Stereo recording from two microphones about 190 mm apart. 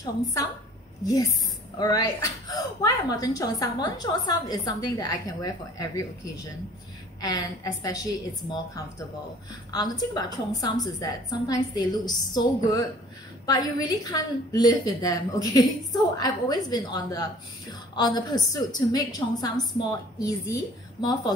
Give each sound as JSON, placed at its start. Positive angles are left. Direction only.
{"t": 0.0, "sound": "a woman's voice", "side_deg": 15}
{"t": 13.5, "sound": "a woman's voice", "side_deg": 20}